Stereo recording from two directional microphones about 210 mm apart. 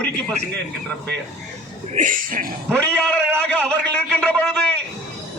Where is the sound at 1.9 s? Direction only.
40° right (ahead or behind).